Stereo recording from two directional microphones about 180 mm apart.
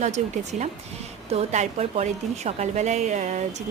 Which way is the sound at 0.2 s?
40° right (ahead or behind).